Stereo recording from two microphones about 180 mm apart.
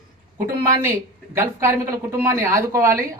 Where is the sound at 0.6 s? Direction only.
15° right (ahead or behind).